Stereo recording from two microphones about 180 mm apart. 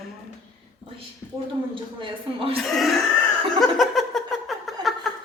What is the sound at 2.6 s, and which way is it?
Speech, centre (ahead or behind).